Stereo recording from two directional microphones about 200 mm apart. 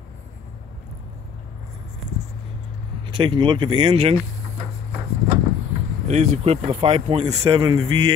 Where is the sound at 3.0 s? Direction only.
25° right (ahead or behind).